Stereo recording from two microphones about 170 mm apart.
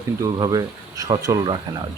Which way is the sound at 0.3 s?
20° right (ahead or behind).